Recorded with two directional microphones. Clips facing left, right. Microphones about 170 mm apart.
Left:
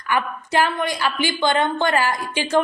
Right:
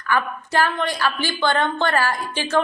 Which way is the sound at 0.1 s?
15° left (ahead or behind).